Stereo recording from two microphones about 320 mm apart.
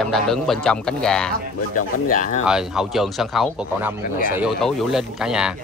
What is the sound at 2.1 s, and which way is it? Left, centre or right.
Speech, left.